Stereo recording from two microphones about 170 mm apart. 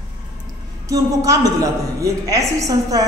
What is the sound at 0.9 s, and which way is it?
A woman's voice, 20° right (ahead or behind).